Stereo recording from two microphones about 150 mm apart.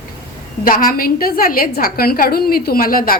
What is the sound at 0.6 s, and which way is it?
A woman's voice, 70° left (ahead or behind).